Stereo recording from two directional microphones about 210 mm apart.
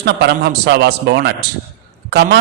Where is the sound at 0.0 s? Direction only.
50° right (ahead or behind).